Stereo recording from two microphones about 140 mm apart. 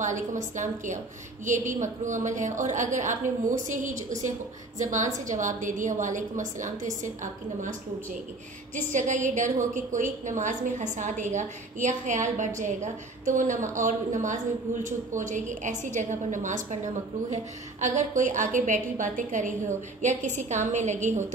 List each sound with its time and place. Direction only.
0.0 s a woman's voice: 60° right (ahead or behind)
8.7 s a woman's voice: 60° right (ahead or behind)